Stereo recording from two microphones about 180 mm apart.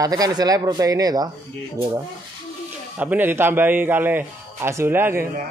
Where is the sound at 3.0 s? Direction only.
10° right (ahead or behind).